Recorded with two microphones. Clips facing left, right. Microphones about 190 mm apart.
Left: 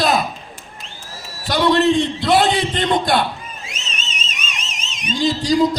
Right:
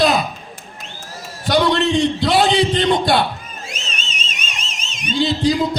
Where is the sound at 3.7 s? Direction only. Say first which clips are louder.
Right 2 dB; 30° right (ahead or behind).